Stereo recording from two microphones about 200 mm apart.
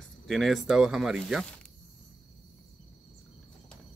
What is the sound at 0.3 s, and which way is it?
Speech, centre (ahead or behind).